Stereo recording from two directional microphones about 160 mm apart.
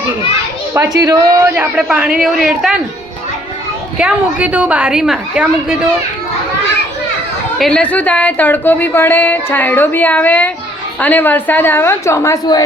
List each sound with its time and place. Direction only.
0.7 s a man's voice: 20° right (ahead or behind)
1.5 s a woman's voice: 10° right (ahead or behind)
3.9 s a woman's voice: 5° right (ahead or behind)
7.6 s speech: 5° left (ahead or behind)